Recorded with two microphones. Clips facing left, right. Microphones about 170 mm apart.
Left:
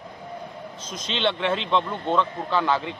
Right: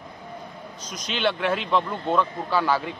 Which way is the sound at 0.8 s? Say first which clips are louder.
Even; 25° left (ahead or behind).